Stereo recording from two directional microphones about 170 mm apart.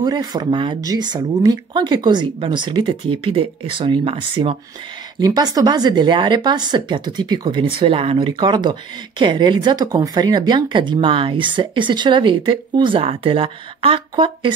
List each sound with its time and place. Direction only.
0.0 s speech: 25° right (ahead or behind)